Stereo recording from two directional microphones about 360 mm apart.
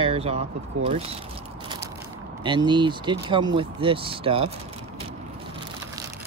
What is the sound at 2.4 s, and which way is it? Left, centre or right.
Speech, centre.